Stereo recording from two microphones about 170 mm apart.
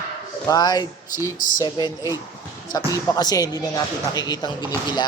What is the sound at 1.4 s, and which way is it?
Speech, 50° left (ahead or behind).